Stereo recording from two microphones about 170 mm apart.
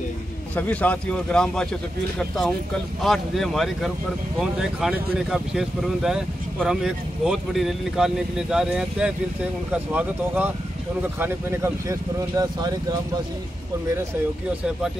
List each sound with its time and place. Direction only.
0.6 s speech: 10° left (ahead or behind); by 12.7 s 20° right (ahead or behind)